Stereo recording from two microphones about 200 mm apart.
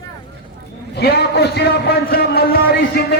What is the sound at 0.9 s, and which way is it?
A man's voice, 55° left (ahead or behind).